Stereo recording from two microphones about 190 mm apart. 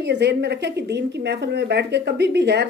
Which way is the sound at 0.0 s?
65° right (ahead or behind).